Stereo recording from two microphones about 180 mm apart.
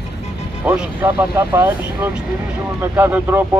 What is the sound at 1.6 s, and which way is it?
A man's voice, 20° right (ahead or behind).